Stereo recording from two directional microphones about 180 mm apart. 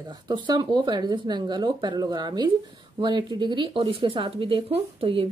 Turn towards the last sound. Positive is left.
turn(degrees=-30)  # may be behind; listen again after turning